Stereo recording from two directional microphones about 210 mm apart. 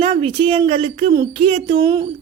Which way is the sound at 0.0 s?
25° right (ahead or behind).